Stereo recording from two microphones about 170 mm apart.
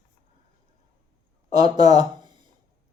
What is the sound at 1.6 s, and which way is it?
Speech, 25° right (ahead or behind).